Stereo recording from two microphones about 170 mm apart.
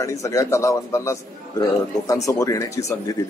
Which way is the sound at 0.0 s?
15° left (ahead or behind).